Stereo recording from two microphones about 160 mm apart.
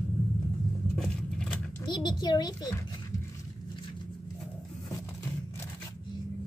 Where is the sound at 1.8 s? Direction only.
25° left (ahead or behind).